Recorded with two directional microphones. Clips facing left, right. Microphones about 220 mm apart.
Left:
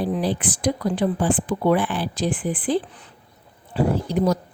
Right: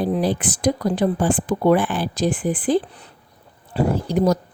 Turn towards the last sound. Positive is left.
turn(degrees=-40)  # may be behind; listen again after turning